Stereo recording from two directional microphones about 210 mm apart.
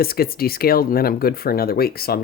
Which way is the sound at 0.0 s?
45° left (ahead or behind).